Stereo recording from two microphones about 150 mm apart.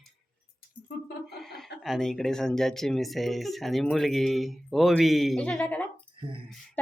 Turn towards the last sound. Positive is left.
turn(degrees=10)  # may be behind; listen again after turning